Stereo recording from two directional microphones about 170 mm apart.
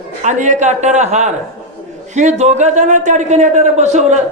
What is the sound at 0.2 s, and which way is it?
Speech, 45° right (ahead or behind).